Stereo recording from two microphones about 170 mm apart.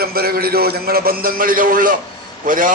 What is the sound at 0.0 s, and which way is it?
A man's voice, 65° right (ahead or behind).